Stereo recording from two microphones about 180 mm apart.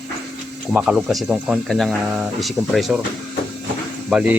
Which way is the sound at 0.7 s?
5° right (ahead or behind).